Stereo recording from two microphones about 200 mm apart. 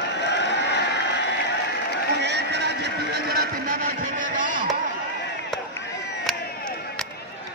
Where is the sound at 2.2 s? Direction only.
60° right (ahead or behind).